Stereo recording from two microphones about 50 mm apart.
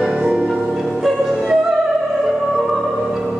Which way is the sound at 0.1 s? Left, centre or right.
Right.